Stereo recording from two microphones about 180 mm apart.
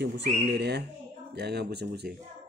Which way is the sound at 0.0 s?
70° right (ahead or behind).